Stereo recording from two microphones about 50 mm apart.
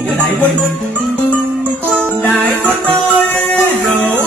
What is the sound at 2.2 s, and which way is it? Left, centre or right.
Music, left.